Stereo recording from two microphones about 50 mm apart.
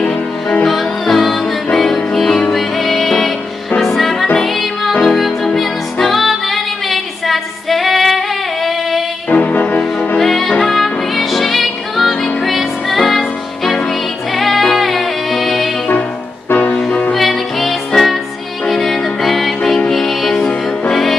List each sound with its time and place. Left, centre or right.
0.0 s music: left
0.7 s music: centre
2.5 s music: centre
9.3 s music: left
9.9 s music: centre
14.3 s music: centre
16.4 s music: left
17.1 s music: centre